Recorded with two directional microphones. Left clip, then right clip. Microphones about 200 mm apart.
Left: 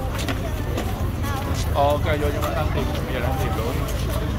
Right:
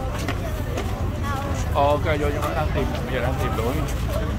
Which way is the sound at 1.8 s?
55° right (ahead or behind).